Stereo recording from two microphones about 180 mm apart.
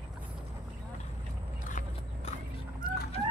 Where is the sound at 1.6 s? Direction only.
45° left (ahead or behind).